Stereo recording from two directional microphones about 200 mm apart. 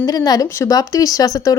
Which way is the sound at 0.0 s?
20° left (ahead or behind).